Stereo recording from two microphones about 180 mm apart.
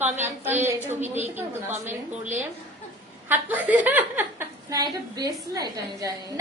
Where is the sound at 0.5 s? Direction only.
10° right (ahead or behind).